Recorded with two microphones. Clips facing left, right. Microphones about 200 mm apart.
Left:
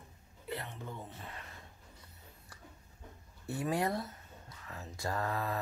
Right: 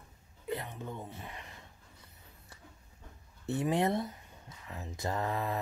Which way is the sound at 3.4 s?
20° right (ahead or behind).